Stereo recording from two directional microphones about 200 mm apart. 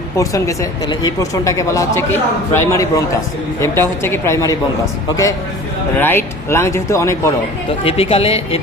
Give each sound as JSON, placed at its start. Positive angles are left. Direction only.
{"t": 0.2, "sound": "speech", "side_deg": 15}
{"t": 7.9, "sound": "speech", "side_deg": 25}